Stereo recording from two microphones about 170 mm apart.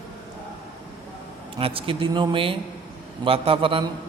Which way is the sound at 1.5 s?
30° right (ahead or behind).